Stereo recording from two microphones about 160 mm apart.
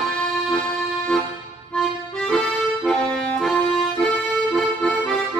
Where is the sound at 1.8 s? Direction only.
Centre (ahead or behind).